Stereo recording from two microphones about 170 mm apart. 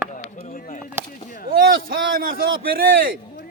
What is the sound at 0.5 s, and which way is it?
Speech, 55° left (ahead or behind).